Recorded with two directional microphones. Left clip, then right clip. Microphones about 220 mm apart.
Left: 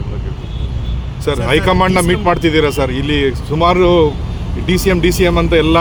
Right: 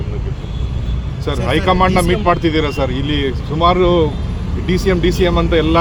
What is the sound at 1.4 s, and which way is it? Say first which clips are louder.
Speech: left 1 dB; 30° left (ahead or behind).